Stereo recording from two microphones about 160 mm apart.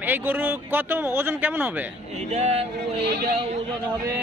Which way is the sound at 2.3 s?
45° right (ahead or behind).